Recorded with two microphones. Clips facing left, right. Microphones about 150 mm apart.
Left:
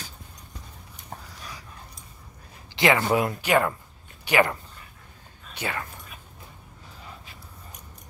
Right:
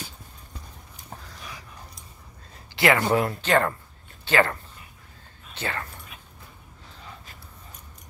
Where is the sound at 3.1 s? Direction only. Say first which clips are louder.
Even; 15° left (ahead or behind).